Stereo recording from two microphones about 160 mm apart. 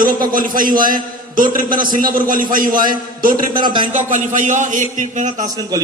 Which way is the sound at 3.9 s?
50° right (ahead or behind).